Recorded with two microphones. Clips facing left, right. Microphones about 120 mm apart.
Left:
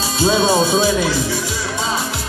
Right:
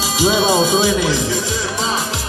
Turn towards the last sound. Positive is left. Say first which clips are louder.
# even
turn(degrees=-15)  # may be behind; listen again after turning